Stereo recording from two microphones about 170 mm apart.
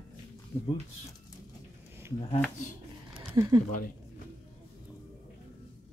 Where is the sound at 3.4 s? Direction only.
20° right (ahead or behind).